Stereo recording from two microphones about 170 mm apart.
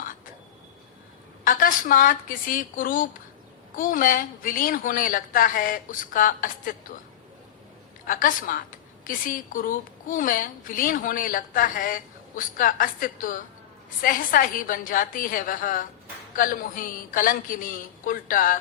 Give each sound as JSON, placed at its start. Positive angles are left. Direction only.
{"t": 1.5, "sound": "a woman's voice", "side_deg": 55}
{"t": 8.0, "sound": "a woman's voice", "side_deg": 55}